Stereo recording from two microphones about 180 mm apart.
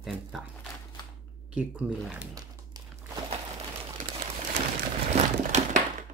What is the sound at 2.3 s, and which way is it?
Crumpling, 20° right (ahead or behind).